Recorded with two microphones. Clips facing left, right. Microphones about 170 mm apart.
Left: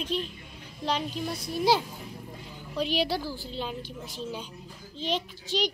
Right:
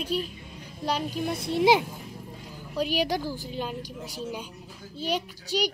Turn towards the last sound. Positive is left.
turn(degrees=-10)  # may be behind; listen again after turning